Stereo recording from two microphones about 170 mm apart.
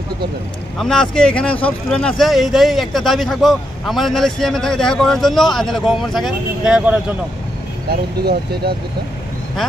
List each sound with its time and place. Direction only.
0.7 s speech: 5° left (ahead or behind)
7.9 s speech: 70° right (ahead or behind)